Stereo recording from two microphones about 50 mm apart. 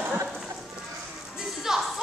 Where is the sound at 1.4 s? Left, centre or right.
Centre.